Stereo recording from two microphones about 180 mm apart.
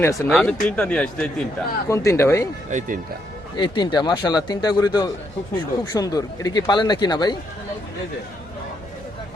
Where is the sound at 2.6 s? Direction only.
45° right (ahead or behind).